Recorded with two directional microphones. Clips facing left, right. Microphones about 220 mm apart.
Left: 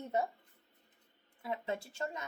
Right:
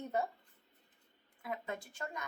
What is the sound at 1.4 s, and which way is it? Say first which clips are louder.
Speech: left 3 dB; 25° left (ahead or behind).